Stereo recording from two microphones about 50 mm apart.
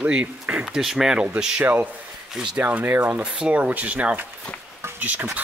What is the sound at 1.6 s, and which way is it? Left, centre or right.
Speech, right.